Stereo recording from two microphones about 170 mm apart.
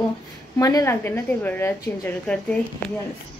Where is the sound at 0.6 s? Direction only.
20° left (ahead or behind).